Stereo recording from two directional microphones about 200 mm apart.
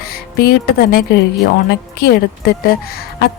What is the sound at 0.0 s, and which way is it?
A woman's voice, 50° left (ahead or behind).